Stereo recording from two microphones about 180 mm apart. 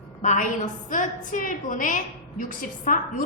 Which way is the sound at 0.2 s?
45° left (ahead or behind).